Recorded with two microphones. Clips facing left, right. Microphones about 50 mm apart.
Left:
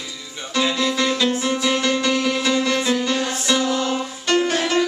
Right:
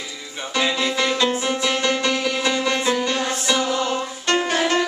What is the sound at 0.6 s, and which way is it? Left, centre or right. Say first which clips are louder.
Music: left 1 dB; centre.